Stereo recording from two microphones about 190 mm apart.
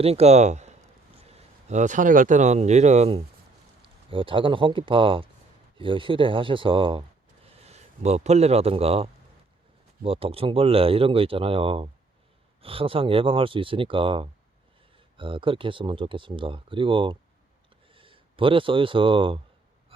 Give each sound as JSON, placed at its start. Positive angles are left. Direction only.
{"t": 0.0, "sound": "a man's voice", "side_deg": -35}